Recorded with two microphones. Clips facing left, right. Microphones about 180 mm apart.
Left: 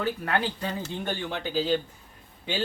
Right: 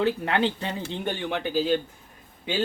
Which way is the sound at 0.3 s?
25° right (ahead or behind).